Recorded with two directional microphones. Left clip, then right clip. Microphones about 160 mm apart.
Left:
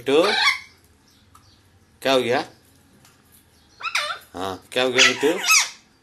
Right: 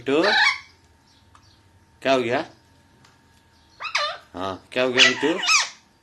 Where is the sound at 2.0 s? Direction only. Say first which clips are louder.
Left 1 dB; 15° right (ahead or behind).